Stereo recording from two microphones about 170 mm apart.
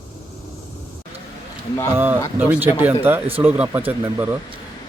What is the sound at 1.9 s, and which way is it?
A woman's voice, 10° right (ahead or behind).